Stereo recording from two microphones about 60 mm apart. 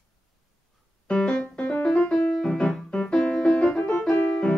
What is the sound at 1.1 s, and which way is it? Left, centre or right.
Keyboard, centre.